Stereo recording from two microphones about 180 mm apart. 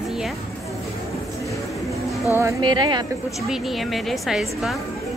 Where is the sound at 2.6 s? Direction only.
25° right (ahead or behind).